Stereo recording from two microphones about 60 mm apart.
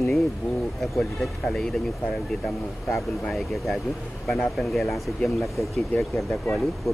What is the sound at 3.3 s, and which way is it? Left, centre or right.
A man's voice, centre.